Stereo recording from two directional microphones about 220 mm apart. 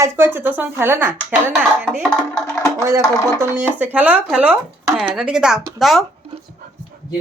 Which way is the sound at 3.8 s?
5° right (ahead or behind).